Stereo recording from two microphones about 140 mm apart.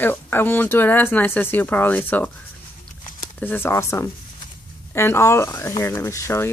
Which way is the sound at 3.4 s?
15° left (ahead or behind).